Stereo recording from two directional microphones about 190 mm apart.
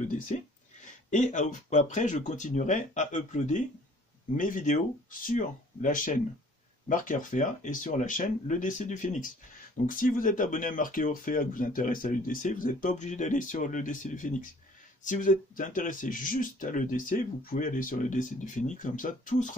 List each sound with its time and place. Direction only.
0.0 s speech: 40° left (ahead or behind)